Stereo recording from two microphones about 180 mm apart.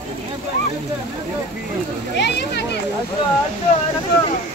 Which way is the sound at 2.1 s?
70° left (ahead or behind).